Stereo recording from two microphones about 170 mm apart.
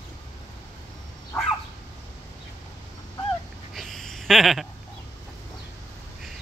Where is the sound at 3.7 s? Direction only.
Centre (ahead or behind).